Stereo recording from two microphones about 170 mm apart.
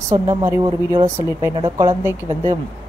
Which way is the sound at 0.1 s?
20° right (ahead or behind).